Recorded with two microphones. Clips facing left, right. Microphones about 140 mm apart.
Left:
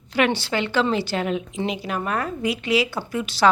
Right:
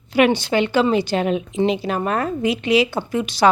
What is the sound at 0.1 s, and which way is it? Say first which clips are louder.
A woman's voice: right 5 dB; 15° right (ahead or behind).